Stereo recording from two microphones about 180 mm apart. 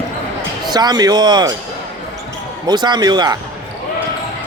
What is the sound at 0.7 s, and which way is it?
Speech, 20° right (ahead or behind).